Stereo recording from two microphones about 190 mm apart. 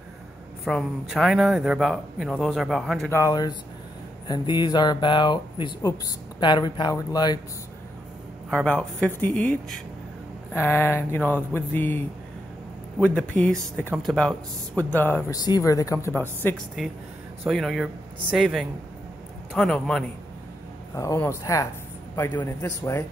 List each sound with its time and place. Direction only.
0.7 s speech: centre (ahead or behind)
3.1 s speech: 15° left (ahead or behind)
8.5 s speech: 5° left (ahead or behind)
13.0 s speech: 5° left (ahead or behind)
13.8 s speech: 5° right (ahead or behind)
14.8 s speech: 10° left (ahead or behind)
17.5 s speech: centre (ahead or behind)
20.9 s speech: 15° left (ahead or behind)